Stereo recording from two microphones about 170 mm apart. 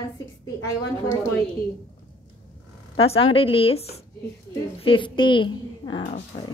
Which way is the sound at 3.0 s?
35° left (ahead or behind).